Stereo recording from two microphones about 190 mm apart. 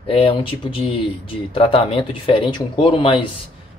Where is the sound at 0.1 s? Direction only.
30° left (ahead or behind).